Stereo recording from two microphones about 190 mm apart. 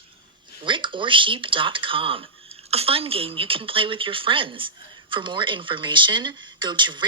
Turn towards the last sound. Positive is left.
turn(degrees=-25)  # may be behind; listen again after turning